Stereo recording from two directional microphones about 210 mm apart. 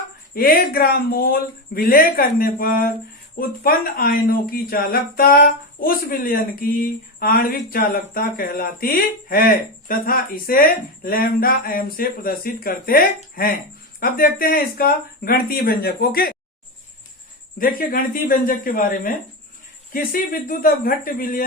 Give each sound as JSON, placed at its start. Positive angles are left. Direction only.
{"t": 0.3, "sound": "speech", "side_deg": 45}
{"t": 17.6, "sound": "speech", "side_deg": 40}